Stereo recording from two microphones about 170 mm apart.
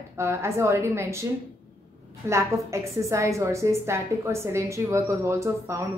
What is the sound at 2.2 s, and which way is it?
A woman's voice, 15° right (ahead or behind).